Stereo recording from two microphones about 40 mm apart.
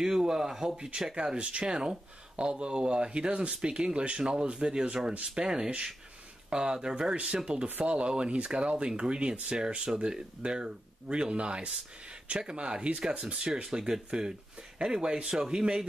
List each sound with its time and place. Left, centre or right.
0.0 s speech: centre
0.7 s speech: right